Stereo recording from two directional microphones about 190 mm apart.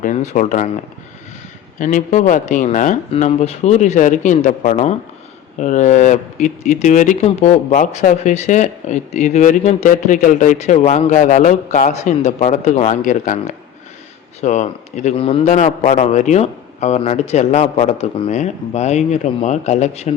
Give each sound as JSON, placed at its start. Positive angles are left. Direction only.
{"t": 0.0, "sound": "speech", "side_deg": 40}
{"t": 1.8, "sound": "speech", "side_deg": 40}